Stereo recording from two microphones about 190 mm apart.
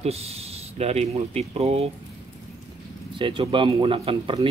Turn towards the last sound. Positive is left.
turn(degrees=-30)  # may be behind; listen again after turning